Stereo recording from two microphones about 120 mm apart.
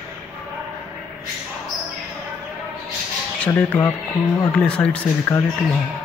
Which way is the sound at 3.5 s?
15° left (ahead or behind).